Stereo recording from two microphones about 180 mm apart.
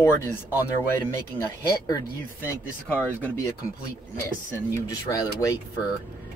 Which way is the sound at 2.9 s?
10° left (ahead or behind).